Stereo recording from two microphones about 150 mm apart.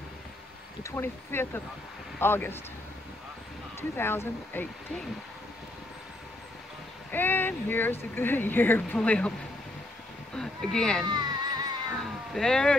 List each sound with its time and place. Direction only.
0.8 s speech: 15° left (ahead or behind)
3.9 s speech: 15° left (ahead or behind)
7.1 s speech: 15° left (ahead or behind)
10.3 s a sound: 5° left (ahead or behind)
11.1 s music: 25° right (ahead or behind)
12.0 s cat: centre (ahead or behind)